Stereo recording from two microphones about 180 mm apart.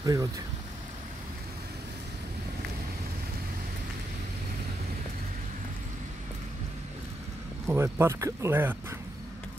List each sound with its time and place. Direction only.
0.0 s speech: 20° right (ahead or behind)
7.6 s speech: 15° right (ahead or behind)